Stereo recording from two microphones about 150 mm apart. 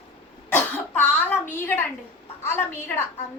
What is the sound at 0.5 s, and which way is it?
A woman's voice, 10° left (ahead or behind).